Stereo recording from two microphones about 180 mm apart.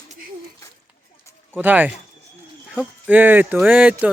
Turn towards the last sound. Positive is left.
turn(degrees=-10)  # may be behind; listen again after turning